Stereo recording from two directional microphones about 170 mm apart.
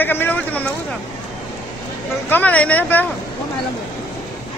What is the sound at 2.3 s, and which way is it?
Speech, 10° left (ahead or behind).